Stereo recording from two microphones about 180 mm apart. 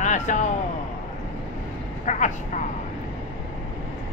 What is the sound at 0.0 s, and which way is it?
Speech, 40° left (ahead or behind).